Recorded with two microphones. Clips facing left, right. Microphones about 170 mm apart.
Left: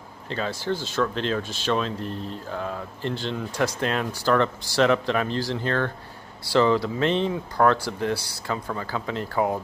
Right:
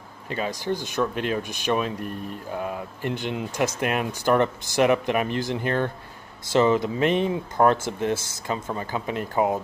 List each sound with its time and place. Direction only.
0.3 s speech: 15° right (ahead or behind)